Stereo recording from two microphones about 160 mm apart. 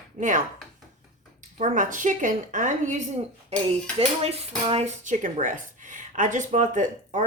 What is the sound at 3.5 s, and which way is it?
Speech, 40° right (ahead or behind).